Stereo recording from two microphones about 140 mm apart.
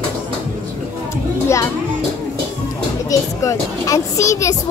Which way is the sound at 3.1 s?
25° left (ahead or behind).